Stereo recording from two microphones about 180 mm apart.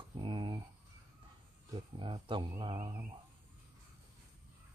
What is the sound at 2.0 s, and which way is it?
Speech, 25° right (ahead or behind).